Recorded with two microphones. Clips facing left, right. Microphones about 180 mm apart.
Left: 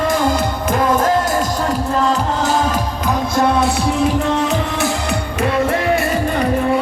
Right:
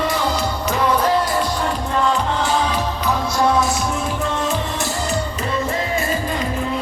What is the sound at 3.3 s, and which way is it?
Music, 55° left (ahead or behind).